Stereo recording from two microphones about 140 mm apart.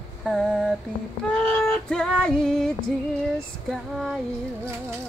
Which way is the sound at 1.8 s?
5° left (ahead or behind).